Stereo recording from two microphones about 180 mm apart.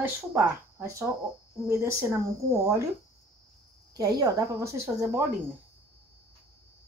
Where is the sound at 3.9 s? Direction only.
20° right (ahead or behind).